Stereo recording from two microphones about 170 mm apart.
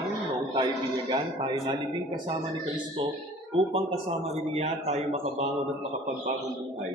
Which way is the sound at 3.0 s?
30° right (ahead or behind).